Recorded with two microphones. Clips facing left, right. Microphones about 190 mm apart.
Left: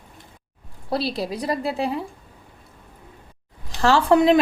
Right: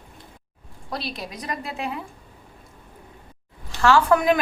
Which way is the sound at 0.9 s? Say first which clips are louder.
Left 7 dB; 30° left (ahead or behind).